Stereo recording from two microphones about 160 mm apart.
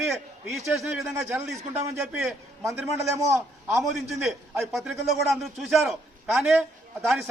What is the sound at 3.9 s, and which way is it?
A man's voice, centre (ahead or behind).